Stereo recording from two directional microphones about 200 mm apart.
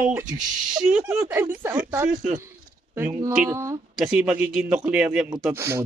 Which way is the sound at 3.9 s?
5° right (ahead or behind).